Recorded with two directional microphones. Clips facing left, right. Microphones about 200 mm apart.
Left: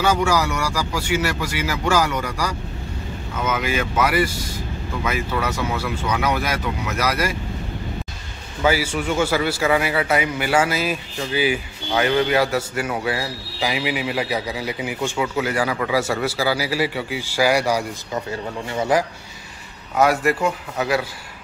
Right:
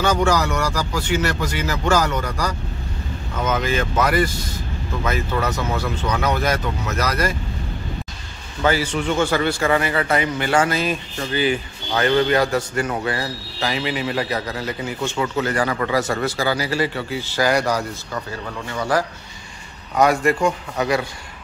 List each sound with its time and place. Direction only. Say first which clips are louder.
0.0 s a man's voice: right 1 dB; 10° left (ahead or behind)
8.6 s a man's voice: even; 10° left (ahead or behind)
18.1 s speech: left 4 dB; 25° left (ahead or behind)
20.0 s a man's voice: right 1 dB; 5° left (ahead or behind)